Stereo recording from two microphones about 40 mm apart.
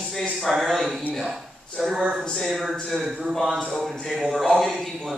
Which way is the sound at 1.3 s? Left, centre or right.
Centre.